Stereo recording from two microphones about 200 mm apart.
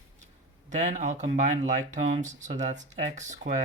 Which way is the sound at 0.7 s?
35° right (ahead or behind).